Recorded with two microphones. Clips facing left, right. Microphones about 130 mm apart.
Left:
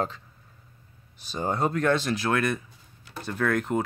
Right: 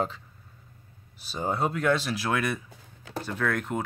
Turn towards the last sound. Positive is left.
turn(degrees=0)  # may be behind; listen again after turning